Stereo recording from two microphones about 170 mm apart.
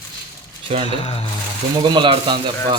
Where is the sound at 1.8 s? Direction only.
25° right (ahead or behind).